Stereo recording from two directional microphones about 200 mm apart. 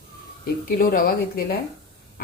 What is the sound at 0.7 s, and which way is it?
Speech, 45° left (ahead or behind).